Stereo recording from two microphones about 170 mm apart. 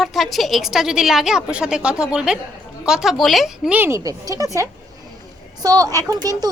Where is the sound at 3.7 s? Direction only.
15° right (ahead or behind).